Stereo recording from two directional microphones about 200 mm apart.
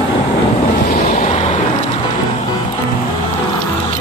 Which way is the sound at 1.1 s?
35° left (ahead or behind).